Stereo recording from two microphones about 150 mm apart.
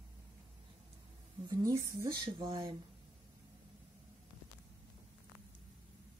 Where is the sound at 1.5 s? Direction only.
25° right (ahead or behind).